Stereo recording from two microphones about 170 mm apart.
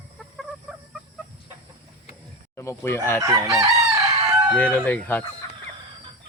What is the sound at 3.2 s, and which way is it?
Chicken, 20° right (ahead or behind).